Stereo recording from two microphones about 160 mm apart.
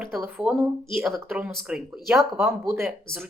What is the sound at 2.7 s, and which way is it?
Speech, 15° right (ahead or behind).